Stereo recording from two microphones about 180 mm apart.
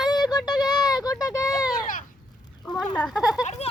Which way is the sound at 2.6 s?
5° left (ahead or behind).